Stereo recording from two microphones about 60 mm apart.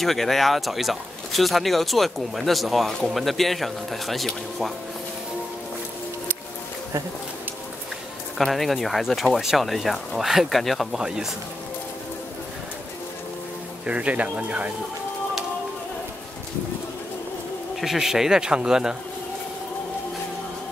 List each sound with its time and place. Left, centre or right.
0.0 s speech: centre
8.4 s speech: centre
11.0 s speech: centre
13.8 s speech: right
17.7 s speech: centre